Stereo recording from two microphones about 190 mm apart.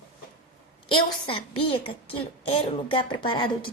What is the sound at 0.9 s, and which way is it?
A woman's voice, 25° left (ahead or behind).